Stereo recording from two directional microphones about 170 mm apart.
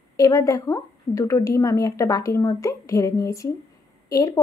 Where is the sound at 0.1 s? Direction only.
20° left (ahead or behind).